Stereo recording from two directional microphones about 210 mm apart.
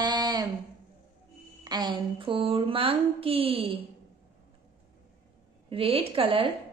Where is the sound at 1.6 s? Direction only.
20° right (ahead or behind).